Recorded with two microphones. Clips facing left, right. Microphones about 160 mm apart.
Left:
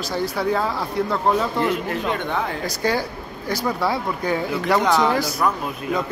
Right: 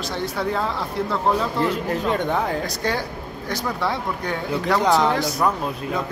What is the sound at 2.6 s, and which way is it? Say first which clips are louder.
Speech: left 3 dB; 5° left (ahead or behind).